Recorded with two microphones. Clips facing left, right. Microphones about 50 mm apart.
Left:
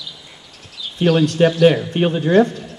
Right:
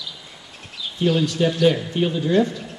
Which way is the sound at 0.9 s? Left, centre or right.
Left.